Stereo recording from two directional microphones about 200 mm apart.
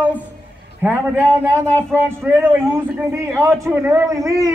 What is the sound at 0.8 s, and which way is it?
Speech, 10° right (ahead or behind).